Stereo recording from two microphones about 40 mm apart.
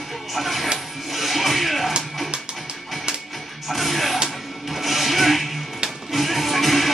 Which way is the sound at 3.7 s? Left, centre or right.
Centre.